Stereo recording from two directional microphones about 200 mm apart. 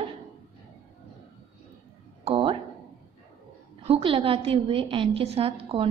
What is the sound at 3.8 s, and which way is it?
A woman's voice, 30° right (ahead or behind).